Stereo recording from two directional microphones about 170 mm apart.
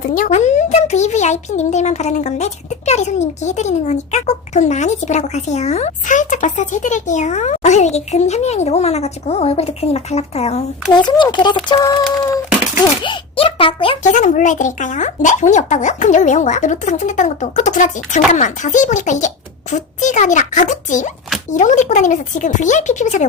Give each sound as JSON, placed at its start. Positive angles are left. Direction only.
{"t": 0.1, "sound": "a child's voice", "side_deg": 45}
{"t": 10.9, "sound": "speech", "side_deg": 25}
{"t": 13.0, "sound": "a child's voice", "side_deg": 30}
{"t": 14.0, "sound": "a child's voice", "side_deg": 45}